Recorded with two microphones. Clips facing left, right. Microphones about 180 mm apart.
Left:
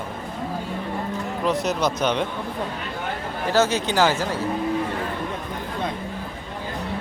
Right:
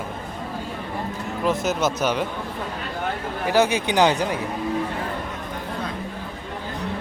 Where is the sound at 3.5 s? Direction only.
15° right (ahead or behind).